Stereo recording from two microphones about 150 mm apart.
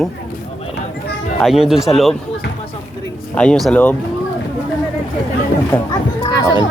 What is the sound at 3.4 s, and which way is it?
Speech, 5° left (ahead or behind).